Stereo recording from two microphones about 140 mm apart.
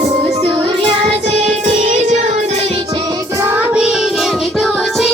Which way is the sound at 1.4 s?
60° right (ahead or behind).